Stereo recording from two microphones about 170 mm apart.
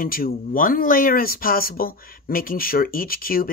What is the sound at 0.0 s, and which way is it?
Speech, 55° left (ahead or behind).